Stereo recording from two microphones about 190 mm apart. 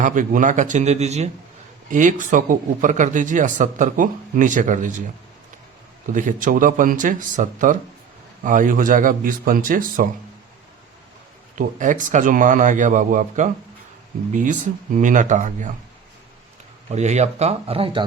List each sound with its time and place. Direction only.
0.0 s speech: 45° right (ahead or behind)
6.1 s a man's voice: 45° right (ahead or behind)
11.5 s speech: 45° right (ahead or behind)
14.9 s speech: 40° right (ahead or behind)
16.9 s speech: 35° right (ahead or behind)